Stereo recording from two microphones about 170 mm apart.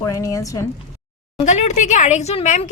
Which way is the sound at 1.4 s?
45° left (ahead or behind).